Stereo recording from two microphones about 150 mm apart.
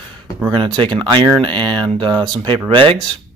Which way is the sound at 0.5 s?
35° right (ahead or behind).